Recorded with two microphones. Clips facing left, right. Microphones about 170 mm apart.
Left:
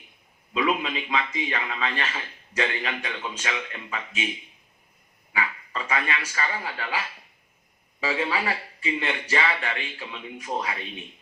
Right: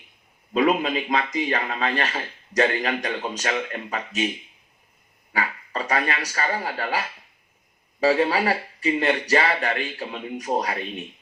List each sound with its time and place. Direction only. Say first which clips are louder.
0.5 s a man's voice: right 5 dB; 40° right (ahead or behind)
5.3 s a man's voice: right 2 dB; 40° right (ahead or behind)